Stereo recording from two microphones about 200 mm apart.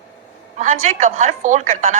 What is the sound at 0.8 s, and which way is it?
A woman's voice, 40° right (ahead or behind).